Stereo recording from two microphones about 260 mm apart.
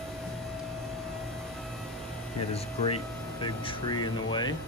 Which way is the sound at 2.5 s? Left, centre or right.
Left.